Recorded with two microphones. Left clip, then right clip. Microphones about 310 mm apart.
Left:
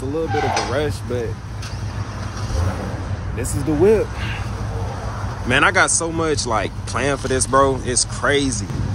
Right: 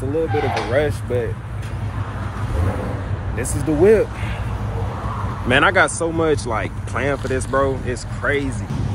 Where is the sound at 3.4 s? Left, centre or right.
Centre.